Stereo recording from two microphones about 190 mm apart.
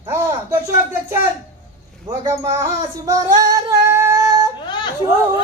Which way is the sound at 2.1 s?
15° right (ahead or behind).